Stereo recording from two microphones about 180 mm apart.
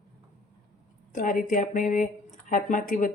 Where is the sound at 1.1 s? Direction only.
50° left (ahead or behind).